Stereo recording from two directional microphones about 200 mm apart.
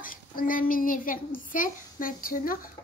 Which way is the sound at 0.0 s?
45° left (ahead or behind).